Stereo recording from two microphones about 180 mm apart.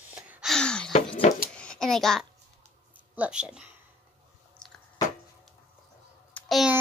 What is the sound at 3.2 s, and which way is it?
Speech, 5° right (ahead or behind).